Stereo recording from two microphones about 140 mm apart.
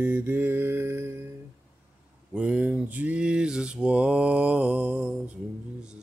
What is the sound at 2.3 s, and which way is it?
Mantra, 10° right (ahead or behind).